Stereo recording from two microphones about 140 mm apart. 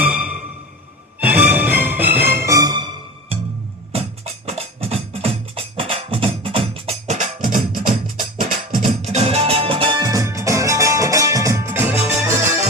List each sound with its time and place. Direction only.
0.0 s music: 10° right (ahead or behind); by 3.3 s 35° right (ahead or behind)
3.9 s music: 45° right (ahead or behind); by 7.8 s 75° right (ahead or behind)
8.9 s music: 50° right (ahead or behind); by 12.5 s 20° right (ahead or behind)